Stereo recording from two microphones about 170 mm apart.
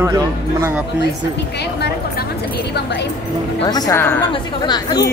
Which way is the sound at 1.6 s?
75° left (ahead or behind).